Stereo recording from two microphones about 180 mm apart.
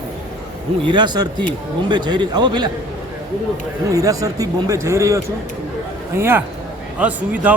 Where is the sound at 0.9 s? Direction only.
25° right (ahead or behind).